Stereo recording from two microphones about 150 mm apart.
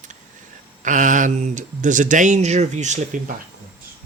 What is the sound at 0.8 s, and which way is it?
Speech, 60° right (ahead or behind).